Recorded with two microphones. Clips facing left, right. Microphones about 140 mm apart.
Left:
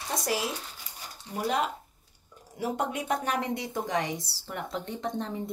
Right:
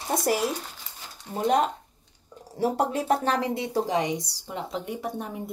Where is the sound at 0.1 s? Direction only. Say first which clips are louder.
Right 6 dB; 55° right (ahead or behind).